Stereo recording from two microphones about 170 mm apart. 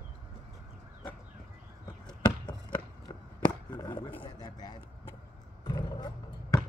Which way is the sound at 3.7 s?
25° left (ahead or behind).